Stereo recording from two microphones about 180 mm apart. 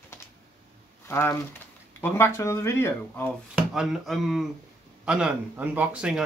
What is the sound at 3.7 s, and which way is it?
A man's voice, centre (ahead or behind).